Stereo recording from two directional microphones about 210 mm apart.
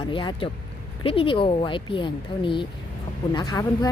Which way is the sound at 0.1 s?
25° left (ahead or behind).